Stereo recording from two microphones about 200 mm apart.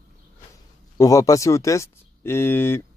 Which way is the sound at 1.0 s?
15° left (ahead or behind).